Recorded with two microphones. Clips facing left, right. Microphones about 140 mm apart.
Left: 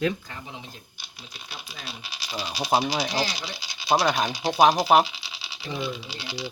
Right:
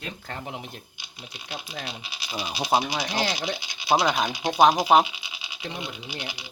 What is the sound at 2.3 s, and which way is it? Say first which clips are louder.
Speech: even; 15° right (ahead or behind).